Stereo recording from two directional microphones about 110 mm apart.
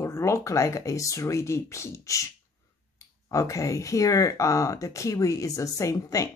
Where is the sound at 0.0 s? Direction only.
25° left (ahead or behind).